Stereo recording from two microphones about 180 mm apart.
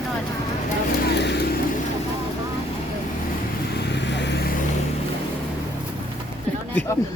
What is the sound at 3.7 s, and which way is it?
Vehicle, 70° left (ahead or behind).